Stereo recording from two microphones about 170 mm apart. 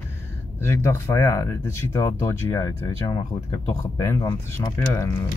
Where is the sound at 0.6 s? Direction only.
15° left (ahead or behind).